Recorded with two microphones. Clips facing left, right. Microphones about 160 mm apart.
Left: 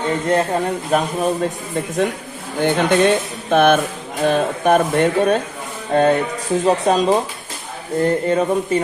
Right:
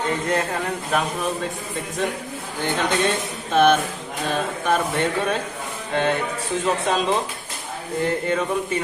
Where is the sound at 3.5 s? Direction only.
55° left (ahead or behind); by 7.2 s 40° left (ahead or behind).